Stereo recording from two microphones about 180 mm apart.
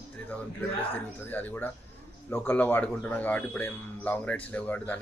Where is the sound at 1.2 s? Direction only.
10° left (ahead or behind).